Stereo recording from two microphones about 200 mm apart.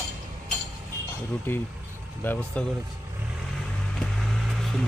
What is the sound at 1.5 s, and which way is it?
Speech, 10° left (ahead or behind).